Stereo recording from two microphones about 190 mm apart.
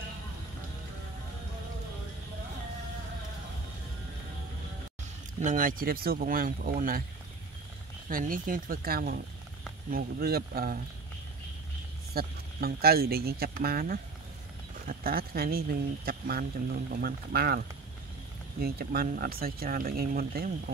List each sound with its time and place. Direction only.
5.4 s speech: 40° right (ahead or behind)
8.1 s speech: 45° right (ahead or behind)
12.1 s speech: 55° right (ahead or behind)